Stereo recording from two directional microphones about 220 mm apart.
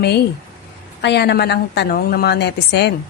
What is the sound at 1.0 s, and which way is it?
A woman's voice, 50° left (ahead or behind).